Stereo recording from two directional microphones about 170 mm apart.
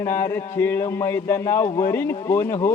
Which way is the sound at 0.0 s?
15° left (ahead or behind).